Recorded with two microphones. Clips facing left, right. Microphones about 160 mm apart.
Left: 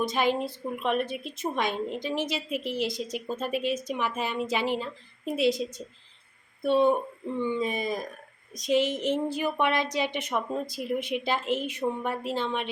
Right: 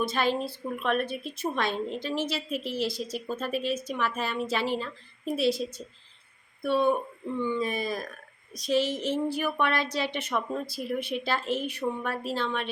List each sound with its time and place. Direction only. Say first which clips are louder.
0.0 s a woman's voice: left 1 dB; 15° left (ahead or behind)